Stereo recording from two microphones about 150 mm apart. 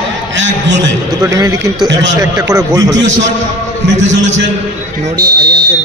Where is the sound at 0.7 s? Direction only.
25° right (ahead or behind).